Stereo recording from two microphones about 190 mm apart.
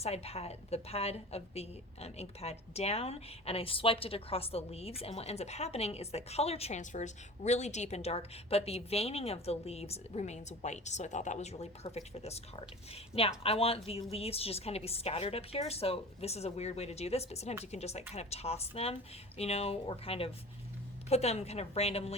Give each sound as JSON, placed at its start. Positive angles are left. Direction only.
{"t": 0.0, "sound": "a woman's voice", "side_deg": 35}